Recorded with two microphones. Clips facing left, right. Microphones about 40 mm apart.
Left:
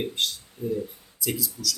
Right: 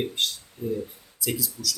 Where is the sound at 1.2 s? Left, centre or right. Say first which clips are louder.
Even; centre.